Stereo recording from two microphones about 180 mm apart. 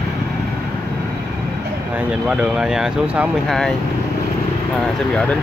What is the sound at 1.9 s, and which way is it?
Speech, 5° right (ahead or behind).